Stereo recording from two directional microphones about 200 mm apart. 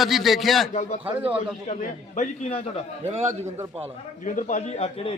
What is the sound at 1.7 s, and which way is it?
A man's voice, 40° left (ahead or behind).